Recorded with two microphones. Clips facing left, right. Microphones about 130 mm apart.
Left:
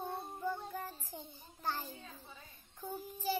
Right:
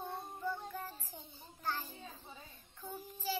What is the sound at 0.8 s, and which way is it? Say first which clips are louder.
Child singing: left 2 dB; 15° left (ahead or behind).